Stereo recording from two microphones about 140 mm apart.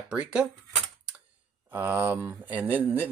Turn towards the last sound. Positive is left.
turn(degrees=-10)  # may be behind; listen again after turning